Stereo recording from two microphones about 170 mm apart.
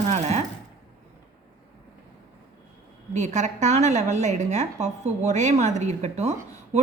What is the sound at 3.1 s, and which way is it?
A woman's voice, 45° right (ahead or behind).